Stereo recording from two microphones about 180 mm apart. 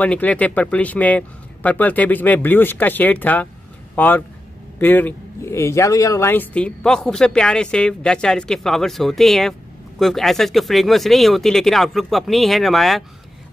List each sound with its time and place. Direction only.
0.0 s speech: 5° left (ahead or behind)